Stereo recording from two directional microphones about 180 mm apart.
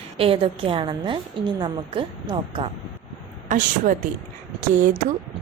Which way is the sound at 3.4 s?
45° right (ahead or behind).